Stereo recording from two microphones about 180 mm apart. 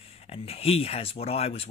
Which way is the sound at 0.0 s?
35° left (ahead or behind).